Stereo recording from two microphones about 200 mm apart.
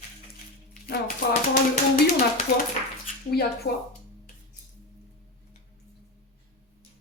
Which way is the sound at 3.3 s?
50° left (ahead or behind).